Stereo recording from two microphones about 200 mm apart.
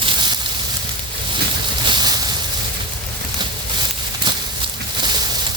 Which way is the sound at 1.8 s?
25° right (ahead or behind).